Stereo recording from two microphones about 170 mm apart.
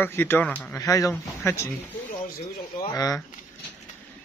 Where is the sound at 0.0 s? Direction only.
15° left (ahead or behind).